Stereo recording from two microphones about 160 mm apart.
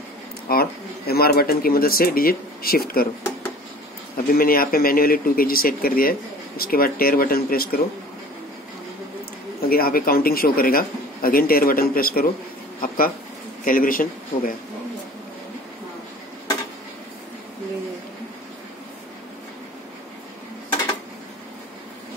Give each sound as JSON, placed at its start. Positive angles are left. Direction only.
{"t": 0.5, "sound": "a man's voice", "side_deg": 75}
{"t": 4.3, "sound": "speech", "side_deg": 65}
{"t": 9.6, "sound": "a man's voice", "side_deg": 65}